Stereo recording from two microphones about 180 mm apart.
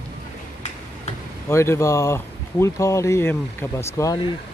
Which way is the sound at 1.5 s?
15° left (ahead or behind).